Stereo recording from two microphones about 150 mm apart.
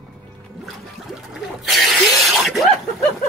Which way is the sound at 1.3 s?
Centre (ahead or behind).